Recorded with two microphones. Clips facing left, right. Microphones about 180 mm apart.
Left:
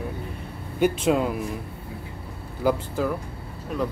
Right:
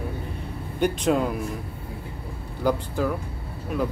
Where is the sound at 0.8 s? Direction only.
5° left (ahead or behind).